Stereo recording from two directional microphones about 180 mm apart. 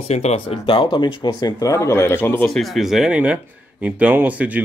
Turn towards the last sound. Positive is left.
turn(degrees=-10)  # may be behind; listen again after turning